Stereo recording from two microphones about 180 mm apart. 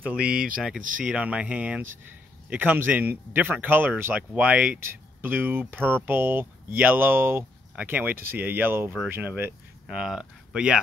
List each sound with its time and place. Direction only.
0.0 s speech: 5° right (ahead or behind)
0.7 s speech: 50° right (ahead or behind)
1.0 s speech: 5° right (ahead or behind)